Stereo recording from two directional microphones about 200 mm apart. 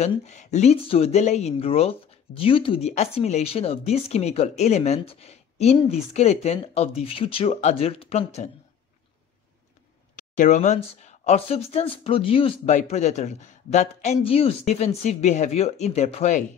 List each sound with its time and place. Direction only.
0.0 s speech: 35° left (ahead or behind)
10.1 s speech: 40° left (ahead or behind)